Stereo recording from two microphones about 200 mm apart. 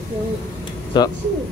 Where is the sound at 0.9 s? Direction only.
20° left (ahead or behind).